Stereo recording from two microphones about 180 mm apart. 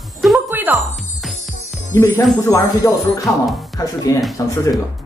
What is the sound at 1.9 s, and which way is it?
Speech, 15° left (ahead or behind).